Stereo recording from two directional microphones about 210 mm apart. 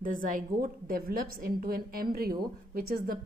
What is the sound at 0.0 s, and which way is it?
A woman's voice, 40° right (ahead or behind).